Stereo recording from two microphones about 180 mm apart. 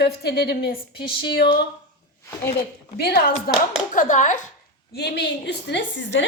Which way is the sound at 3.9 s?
45° left (ahead or behind).